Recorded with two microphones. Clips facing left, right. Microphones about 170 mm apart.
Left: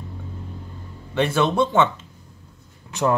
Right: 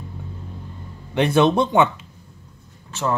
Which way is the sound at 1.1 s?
20° right (ahead or behind).